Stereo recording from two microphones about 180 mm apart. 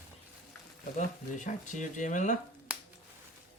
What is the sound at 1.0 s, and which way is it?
Speech, 45° left (ahead or behind).